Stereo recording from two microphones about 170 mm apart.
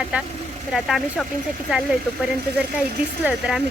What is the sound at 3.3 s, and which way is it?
Speech, 5° right (ahead or behind).